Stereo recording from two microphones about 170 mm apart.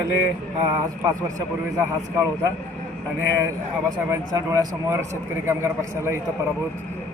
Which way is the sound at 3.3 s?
15° right (ahead or behind).